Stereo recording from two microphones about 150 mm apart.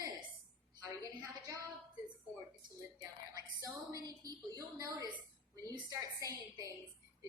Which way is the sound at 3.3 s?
25° right (ahead or behind).